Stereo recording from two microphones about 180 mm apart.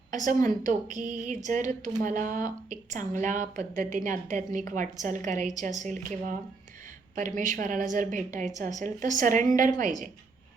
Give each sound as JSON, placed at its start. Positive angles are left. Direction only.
{"t": 0.1, "sound": "a woman's voice", "side_deg": -45}